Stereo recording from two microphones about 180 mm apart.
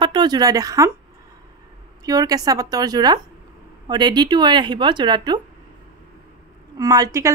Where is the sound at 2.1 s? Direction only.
20° right (ahead or behind).